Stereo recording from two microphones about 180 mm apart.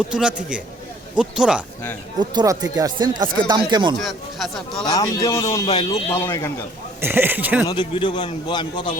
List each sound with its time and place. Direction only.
0.1 s speech: 5° right (ahead or behind)
2.1 s speech: 20° right (ahead or behind)
3.9 s speech: centre (ahead or behind)
4.9 s speech: 20° left (ahead or behind)
7.0 s speech: 10° right (ahead or behind)
7.7 s speech: 25° left (ahead or behind)